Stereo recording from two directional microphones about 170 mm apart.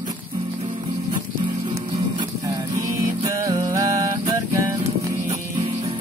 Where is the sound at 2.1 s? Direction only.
20° right (ahead or behind).